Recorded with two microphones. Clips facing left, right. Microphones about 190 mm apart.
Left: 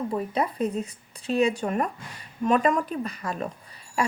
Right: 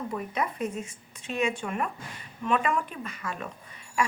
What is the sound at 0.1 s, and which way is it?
A woman's voice, 30° left (ahead or behind).